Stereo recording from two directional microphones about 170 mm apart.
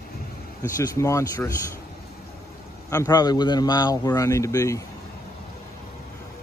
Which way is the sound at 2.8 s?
20° left (ahead or behind).